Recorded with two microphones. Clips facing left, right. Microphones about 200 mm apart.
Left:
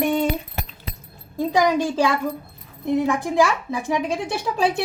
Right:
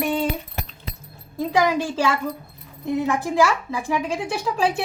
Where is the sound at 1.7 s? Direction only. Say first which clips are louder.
Left 2 dB; 20° left (ahead or behind).